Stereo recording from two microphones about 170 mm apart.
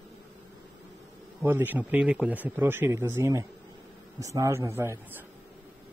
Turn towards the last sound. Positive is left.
turn(degrees=-15)  # may be behind; listen again after turning